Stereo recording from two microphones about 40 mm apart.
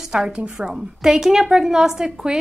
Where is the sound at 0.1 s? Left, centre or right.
Right.